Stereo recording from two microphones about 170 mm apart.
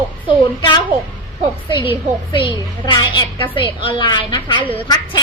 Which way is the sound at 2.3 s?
30° left (ahead or behind).